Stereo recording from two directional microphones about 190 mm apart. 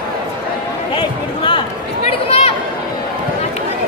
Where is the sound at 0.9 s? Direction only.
25° left (ahead or behind).